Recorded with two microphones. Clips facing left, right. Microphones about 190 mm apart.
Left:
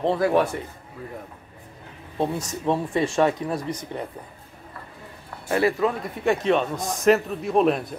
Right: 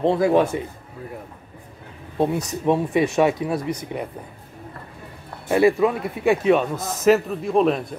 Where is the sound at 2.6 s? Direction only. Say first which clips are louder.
Right 4 dB; 15° right (ahead or behind).